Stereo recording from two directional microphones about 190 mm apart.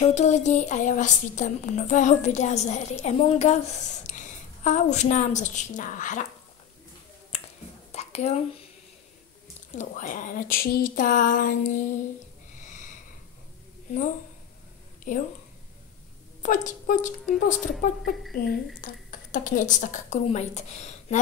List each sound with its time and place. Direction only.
0.0 s a woman's voice: 35° left (ahead or behind)
7.3 s finger snapping: 35° left (ahead or behind)
9.8 s speech: 40° left (ahead or behind)
15.1 s speech: 40° left (ahead or behind)
16.4 s speech: 40° left (ahead or behind)
18.3 s a woman's voice: 55° left (ahead or behind); by 21.2 s 35° left (ahead or behind)